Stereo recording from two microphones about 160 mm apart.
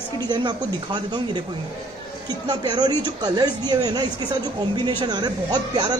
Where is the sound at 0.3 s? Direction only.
25° right (ahead or behind).